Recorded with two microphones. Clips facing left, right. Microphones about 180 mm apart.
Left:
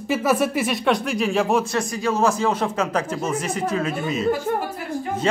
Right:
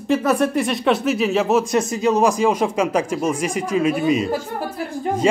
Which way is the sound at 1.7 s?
20° right (ahead or behind).